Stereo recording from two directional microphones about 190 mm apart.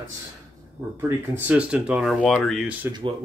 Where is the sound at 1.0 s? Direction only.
10° right (ahead or behind).